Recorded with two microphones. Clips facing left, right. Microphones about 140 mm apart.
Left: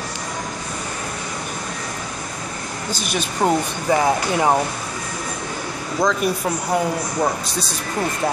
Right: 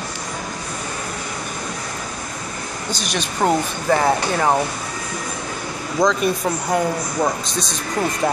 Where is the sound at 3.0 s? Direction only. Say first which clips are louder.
Even; 5° left (ahead or behind).